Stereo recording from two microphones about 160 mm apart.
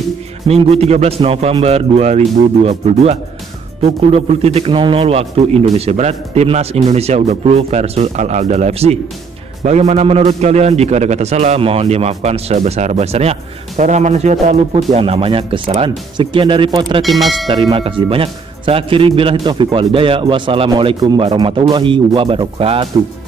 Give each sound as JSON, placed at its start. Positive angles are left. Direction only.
{"t": 0.5, "sound": "a man's voice", "side_deg": -40}
{"t": 4.1, "sound": "a man's voice", "side_deg": -40}
{"t": 17.0, "sound": "speech", "side_deg": 0}
{"t": 17.5, "sound": "a man's voice", "side_deg": -30}